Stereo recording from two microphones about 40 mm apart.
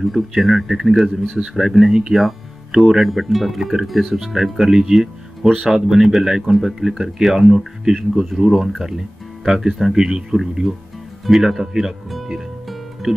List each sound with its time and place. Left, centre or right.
0.0 s speech: centre
5.8 s speech: centre